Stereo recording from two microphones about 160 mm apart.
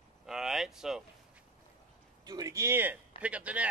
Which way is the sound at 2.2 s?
25° right (ahead or behind).